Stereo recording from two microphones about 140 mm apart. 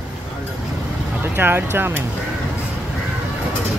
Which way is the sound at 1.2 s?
15° right (ahead or behind).